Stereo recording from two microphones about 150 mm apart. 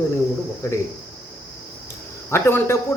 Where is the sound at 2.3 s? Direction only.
15° left (ahead or behind).